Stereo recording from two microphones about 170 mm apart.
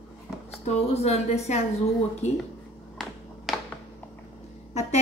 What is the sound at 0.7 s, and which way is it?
A woman's voice, 40° left (ahead or behind).